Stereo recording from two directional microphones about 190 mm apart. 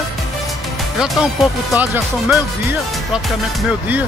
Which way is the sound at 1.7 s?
10° right (ahead or behind).